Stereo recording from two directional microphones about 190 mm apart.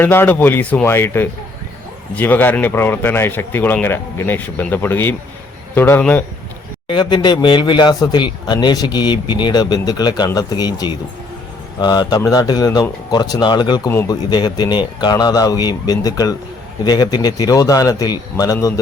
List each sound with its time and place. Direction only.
0.0 s speech: 10° left (ahead or behind)
6.8 s speech: 25° left (ahead or behind)